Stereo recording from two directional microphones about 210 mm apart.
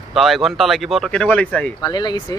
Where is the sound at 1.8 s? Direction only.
20° left (ahead or behind).